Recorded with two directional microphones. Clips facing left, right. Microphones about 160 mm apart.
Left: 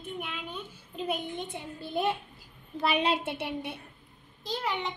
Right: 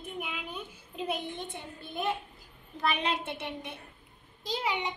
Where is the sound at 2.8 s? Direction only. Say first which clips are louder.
Left 3 dB; 30° left (ahead or behind).